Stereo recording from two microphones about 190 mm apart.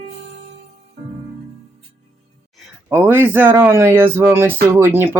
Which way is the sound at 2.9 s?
10° right (ahead or behind).